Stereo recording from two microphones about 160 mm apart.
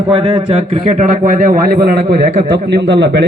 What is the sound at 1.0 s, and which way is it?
A man's voice, 60° right (ahead or behind).